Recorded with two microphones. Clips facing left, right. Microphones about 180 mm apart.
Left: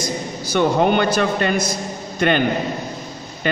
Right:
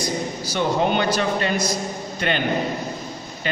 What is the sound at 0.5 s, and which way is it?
A man's voice, 55° left (ahead or behind).